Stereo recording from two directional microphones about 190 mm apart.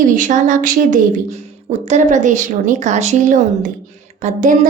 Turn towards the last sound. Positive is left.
turn(degrees=-40)  # may be behind; listen again after turning